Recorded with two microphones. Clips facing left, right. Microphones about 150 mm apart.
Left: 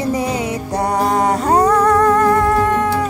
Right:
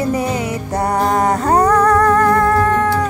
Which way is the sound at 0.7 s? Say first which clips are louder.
Right 1 dB; 10° left (ahead or behind).